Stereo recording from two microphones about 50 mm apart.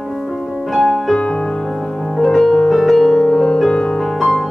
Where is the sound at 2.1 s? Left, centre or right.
Centre.